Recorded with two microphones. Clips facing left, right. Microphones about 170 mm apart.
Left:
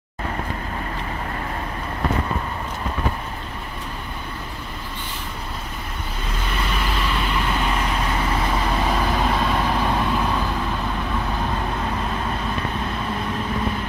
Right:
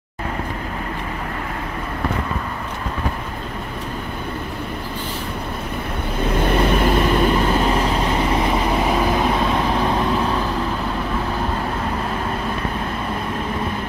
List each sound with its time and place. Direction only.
6.3 s vehicle: 55° right (ahead or behind); by 9.9 s centre (ahead or behind)